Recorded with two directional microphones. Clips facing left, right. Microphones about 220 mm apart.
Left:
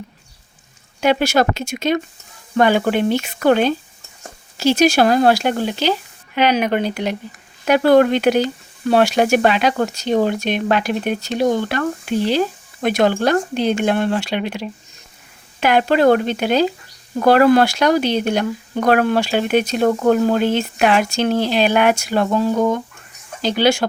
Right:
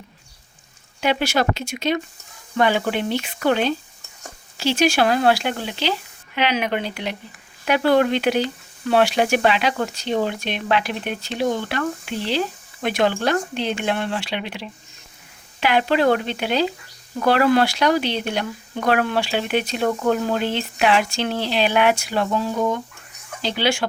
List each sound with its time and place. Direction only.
1.0 s speech: 45° left (ahead or behind)